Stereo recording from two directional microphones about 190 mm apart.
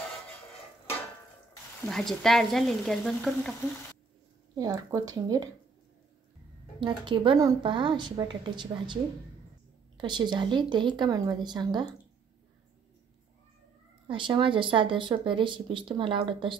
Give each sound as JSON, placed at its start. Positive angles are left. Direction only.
{"t": 1.9, "sound": "speech", "side_deg": 0}
{"t": 4.6, "sound": "speech", "side_deg": -20}
{"t": 6.8, "sound": "speech", "side_deg": -25}
{"t": 14.0, "sound": "speech", "side_deg": -25}